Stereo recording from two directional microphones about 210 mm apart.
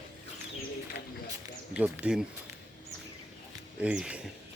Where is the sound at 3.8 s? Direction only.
5° right (ahead or behind).